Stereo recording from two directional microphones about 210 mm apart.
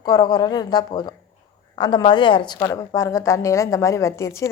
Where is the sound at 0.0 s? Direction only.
20° left (ahead or behind).